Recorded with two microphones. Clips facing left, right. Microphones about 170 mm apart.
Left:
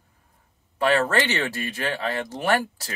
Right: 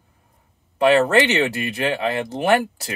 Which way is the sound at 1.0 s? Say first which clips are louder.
Right 6 dB; 20° right (ahead or behind).